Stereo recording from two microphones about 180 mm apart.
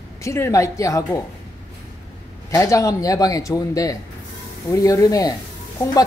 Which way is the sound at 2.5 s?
15° left (ahead or behind).